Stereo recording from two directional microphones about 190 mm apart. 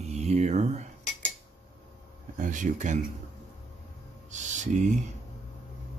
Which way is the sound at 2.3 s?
40° right (ahead or behind).